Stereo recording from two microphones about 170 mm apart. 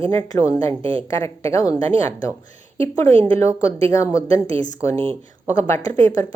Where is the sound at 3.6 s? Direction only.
20° left (ahead or behind).